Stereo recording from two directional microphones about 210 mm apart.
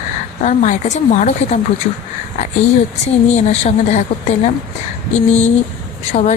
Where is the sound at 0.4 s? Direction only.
35° left (ahead or behind).